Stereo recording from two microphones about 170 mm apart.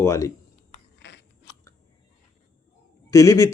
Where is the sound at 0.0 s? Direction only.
15° left (ahead or behind).